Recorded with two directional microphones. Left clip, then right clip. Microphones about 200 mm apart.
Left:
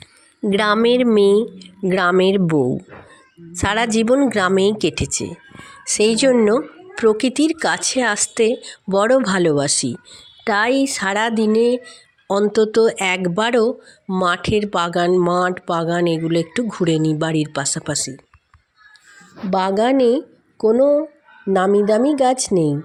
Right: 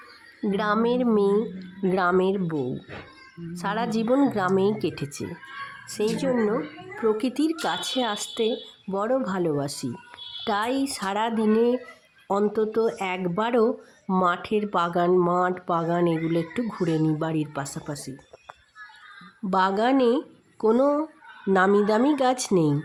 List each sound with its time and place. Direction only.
0.5 s speech: 15° left (ahead or behind)
5.9 s speech: 20° left (ahead or behind)
19.5 s speech: 5° left (ahead or behind)
19.7 s speech: 20° left (ahead or behind)
20.0 s speech: 20° right (ahead or behind)
20.7 s speech: centre (ahead or behind)
22.2 s speech: 15° left (ahead or behind)
22.5 s speech: 20° right (ahead or behind)